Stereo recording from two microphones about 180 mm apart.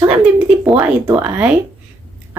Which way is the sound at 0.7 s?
10° right (ahead or behind).